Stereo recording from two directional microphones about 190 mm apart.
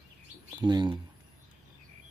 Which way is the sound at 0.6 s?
25° right (ahead or behind).